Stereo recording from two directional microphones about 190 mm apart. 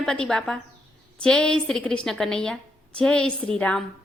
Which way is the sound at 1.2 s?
5° left (ahead or behind).